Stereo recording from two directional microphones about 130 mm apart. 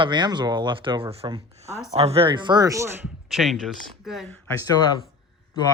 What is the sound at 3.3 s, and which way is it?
Speech, centre (ahead or behind).